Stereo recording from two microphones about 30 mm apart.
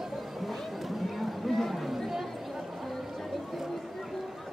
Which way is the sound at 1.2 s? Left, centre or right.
Centre.